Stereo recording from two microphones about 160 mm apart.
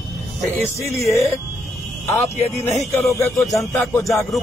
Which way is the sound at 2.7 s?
Centre (ahead or behind).